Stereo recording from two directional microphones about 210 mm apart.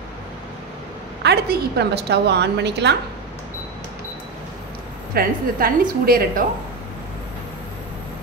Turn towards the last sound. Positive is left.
turn(degrees=-45)  # may be behind; listen again after turning